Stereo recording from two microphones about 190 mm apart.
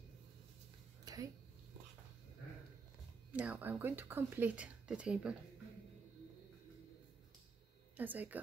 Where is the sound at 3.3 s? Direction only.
10° right (ahead or behind).